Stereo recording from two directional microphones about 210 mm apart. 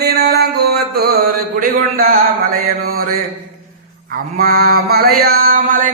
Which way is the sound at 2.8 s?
45° right (ahead or behind).